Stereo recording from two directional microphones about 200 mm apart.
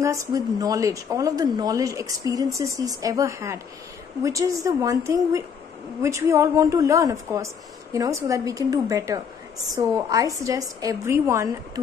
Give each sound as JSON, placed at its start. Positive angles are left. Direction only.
{"t": 0.0, "sound": "a woman's voice", "side_deg": -15}